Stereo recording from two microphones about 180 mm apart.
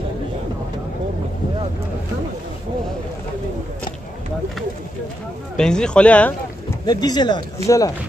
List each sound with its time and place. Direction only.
5.6 s speech: 5° left (ahead or behind)
6.9 s speech: 20° left (ahead or behind)